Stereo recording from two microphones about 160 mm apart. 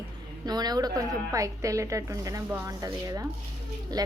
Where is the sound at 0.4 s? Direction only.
25° right (ahead or behind).